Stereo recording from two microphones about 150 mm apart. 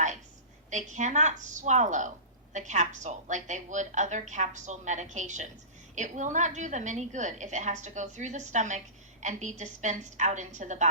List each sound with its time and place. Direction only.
0.7 s a woman's voice: 55° right (ahead or behind)